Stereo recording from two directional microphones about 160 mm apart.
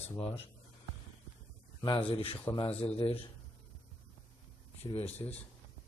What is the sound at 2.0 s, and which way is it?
Speech, 35° left (ahead or behind).